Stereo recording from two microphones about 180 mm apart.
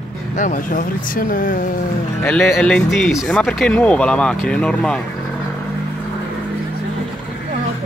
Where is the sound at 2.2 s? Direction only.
5° left (ahead or behind).